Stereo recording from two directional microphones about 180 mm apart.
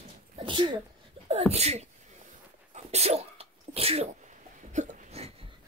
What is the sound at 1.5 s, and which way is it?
Speech, 35° right (ahead or behind).